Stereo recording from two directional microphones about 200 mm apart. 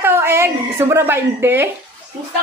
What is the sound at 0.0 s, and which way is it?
A woman's voice, 10° right (ahead or behind).